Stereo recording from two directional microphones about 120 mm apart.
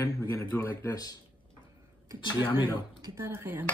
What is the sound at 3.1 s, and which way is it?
Speech, 20° right (ahead or behind).